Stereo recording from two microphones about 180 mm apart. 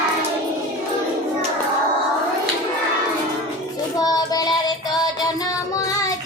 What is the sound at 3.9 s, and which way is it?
Child singing, 20° left (ahead or behind).